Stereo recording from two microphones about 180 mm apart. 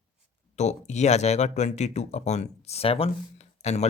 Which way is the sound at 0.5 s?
40° left (ahead or behind).